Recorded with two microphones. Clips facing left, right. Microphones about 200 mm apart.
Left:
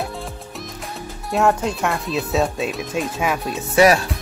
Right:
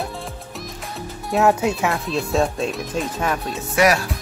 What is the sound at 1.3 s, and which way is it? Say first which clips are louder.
Speech: right 1 dB; 5° right (ahead or behind).